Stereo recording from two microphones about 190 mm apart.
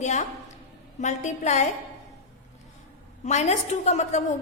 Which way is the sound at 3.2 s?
35° left (ahead or behind).